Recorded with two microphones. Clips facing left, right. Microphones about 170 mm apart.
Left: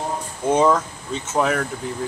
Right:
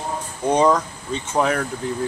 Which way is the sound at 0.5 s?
5° left (ahead or behind).